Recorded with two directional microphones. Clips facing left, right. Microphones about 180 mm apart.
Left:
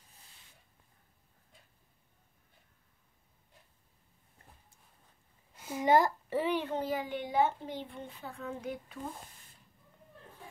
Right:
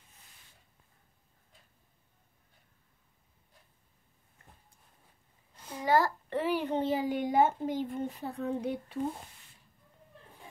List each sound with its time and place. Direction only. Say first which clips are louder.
5.6 s a sound: left 4 dB; 5° left (ahead or behind)
5.9 s a child's voice: left 1 dB; 20° left (ahead or behind)
6.5 s a child's voice: right 2 dB; 10° right (ahead or behind)
6.8 s a child's voice: right 4 dB; 25° right (ahead or behind)
7.1 s speech: right 3 dB; 45° right (ahead or behind)